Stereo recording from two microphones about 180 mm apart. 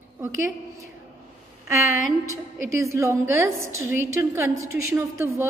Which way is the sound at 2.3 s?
15° right (ahead or behind).